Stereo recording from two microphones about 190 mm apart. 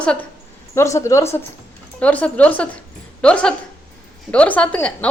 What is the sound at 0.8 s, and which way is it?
A woman's voice, 15° left (ahead or behind).